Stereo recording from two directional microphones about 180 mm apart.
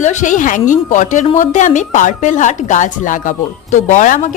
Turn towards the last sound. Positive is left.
turn(degrees=45)  # may be behind; listen again after turning